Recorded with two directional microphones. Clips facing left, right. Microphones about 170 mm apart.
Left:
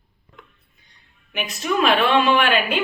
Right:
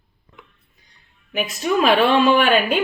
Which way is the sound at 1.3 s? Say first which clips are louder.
Right 3 dB; 40° right (ahead or behind).